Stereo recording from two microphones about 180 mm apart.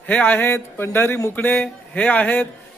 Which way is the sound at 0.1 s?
10° left (ahead or behind).